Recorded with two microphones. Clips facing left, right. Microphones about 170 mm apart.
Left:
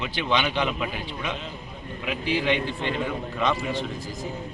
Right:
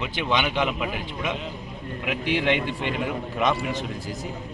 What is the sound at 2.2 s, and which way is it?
Speech, 65° right (ahead or behind).